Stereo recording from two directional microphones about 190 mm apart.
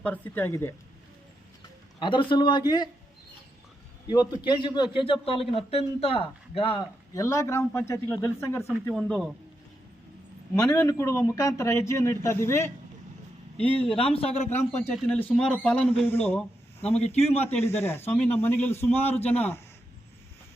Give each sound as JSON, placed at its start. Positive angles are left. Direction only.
{"t": 0.0, "sound": "a man's voice", "side_deg": 10}
{"t": 2.0, "sound": "a man's voice", "side_deg": 25}
{"t": 4.1, "sound": "a man's voice", "side_deg": 20}
{"t": 10.8, "sound": "a man's voice", "side_deg": 15}
{"t": 13.9, "sound": "a man's voice", "side_deg": 30}
{"t": 14.8, "sound": "a man's voice", "side_deg": 5}
{"t": 16.8, "sound": "a man's voice", "side_deg": 35}
{"t": 17.4, "sound": "a man's voice", "side_deg": 10}